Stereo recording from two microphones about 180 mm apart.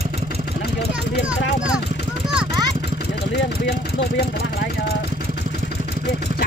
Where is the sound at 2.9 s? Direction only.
65° left (ahead or behind).